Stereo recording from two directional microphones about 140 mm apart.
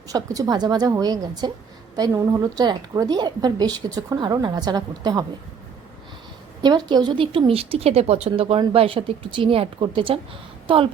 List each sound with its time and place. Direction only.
0.1 s a woman's voice: 25° right (ahead or behind)
6.6 s speech: 30° right (ahead or behind)